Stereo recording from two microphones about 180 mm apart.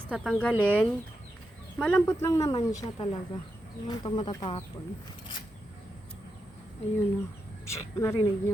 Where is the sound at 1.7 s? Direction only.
5° left (ahead or behind).